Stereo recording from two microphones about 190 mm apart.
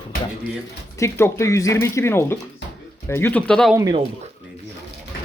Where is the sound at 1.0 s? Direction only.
15° left (ahead or behind).